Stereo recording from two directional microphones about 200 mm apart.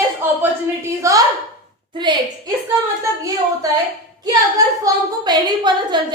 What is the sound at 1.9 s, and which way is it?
Speech, 25° right (ahead or behind).